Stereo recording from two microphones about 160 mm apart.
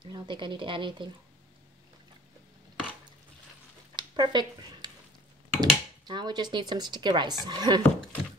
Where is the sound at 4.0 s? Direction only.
30° right (ahead or behind).